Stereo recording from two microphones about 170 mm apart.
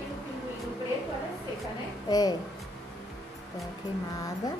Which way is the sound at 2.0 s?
20° left (ahead or behind).